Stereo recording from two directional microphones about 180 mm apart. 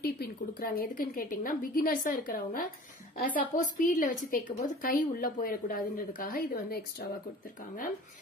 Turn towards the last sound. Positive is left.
turn(degrees=50)  # may be behind; listen again after turning